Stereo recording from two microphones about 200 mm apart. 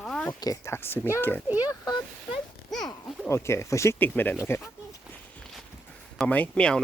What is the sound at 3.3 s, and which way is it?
Speech, 15° left (ahead or behind).